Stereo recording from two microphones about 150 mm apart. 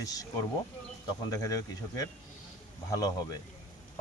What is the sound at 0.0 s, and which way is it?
Speech, 25° left (ahead or behind).